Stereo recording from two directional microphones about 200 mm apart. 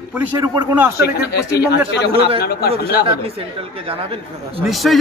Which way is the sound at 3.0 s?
30° right (ahead or behind).